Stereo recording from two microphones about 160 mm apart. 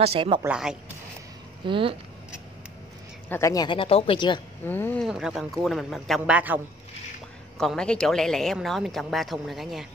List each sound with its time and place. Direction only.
0.0 s a woman's voice: 35° right (ahead or behind)
0.4 s speech: 5° right (ahead or behind)
1.7 s a woman's voice: 35° right (ahead or behind)
3.3 s speech: 20° left (ahead or behind)
4.6 s speech: 15° left (ahead or behind)
5.0 s speech: centre (ahead or behind)
7.5 s speech: 5° left (ahead or behind)